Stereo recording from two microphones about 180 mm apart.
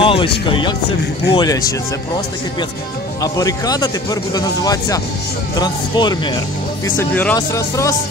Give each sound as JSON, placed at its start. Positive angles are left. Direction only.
{"t": 0.0, "sound": "music", "side_deg": 30}
{"t": 0.5, "sound": "speech", "side_deg": 25}
{"t": 3.2, "sound": "speech", "side_deg": 20}
{"t": 7.0, "sound": "speech", "side_deg": 10}